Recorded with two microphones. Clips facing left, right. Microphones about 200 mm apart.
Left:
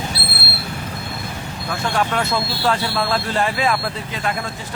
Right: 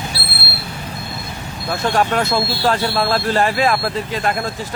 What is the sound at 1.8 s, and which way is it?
Speech, 40° right (ahead or behind).